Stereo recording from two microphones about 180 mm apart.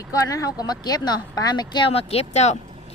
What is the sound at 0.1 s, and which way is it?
A woman's voice, 20° left (ahead or behind).